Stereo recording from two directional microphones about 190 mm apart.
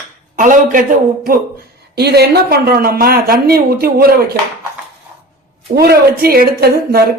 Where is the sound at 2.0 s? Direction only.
60° right (ahead or behind).